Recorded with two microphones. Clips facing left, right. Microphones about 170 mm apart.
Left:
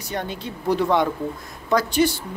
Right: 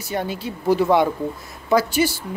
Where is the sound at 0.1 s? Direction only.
5° right (ahead or behind).